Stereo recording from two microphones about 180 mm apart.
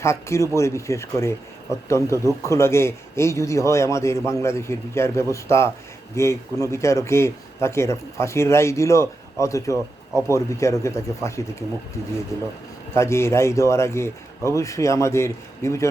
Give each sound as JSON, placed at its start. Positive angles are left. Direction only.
{"t": 0.0, "sound": "a man's voice", "side_deg": 15}
{"t": 12.9, "sound": "a man's voice", "side_deg": 15}